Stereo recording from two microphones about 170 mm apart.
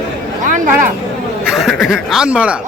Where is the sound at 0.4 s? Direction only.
50° right (ahead or behind).